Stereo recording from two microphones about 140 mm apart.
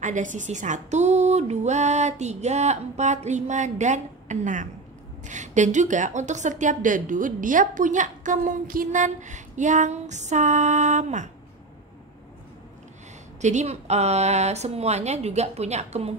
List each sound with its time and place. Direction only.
0.0 s a woman's voice: 65° right (ahead or behind)
13.4 s a woman's voice: 55° right (ahead or behind)